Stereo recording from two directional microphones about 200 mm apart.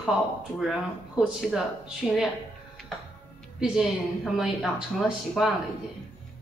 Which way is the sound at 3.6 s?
Centre (ahead or behind).